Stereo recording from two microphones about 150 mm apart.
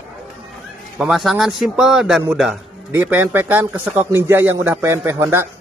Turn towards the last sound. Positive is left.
turn(degrees=-15)  # may be behind; listen again after turning